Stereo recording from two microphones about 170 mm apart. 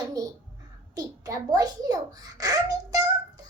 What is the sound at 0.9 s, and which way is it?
A child's voice, 20° right (ahead or behind).